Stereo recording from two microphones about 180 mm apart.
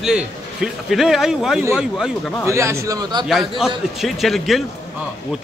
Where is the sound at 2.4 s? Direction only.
15° right (ahead or behind).